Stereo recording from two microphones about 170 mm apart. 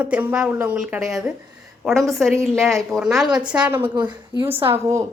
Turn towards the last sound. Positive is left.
turn(degrees=-15)  # may be behind; listen again after turning